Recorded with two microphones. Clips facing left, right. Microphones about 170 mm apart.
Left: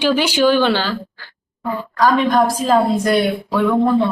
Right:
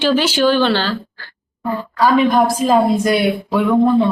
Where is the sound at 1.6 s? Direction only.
Centre (ahead or behind).